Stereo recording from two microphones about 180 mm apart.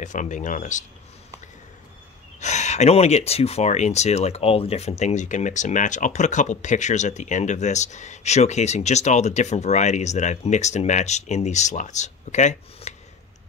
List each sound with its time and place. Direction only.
0.0 s speech: 45° left (ahead or behind)
2.4 s speech: 40° left (ahead or behind)